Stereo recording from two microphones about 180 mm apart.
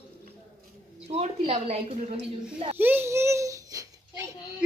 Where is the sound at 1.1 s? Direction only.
35° right (ahead or behind).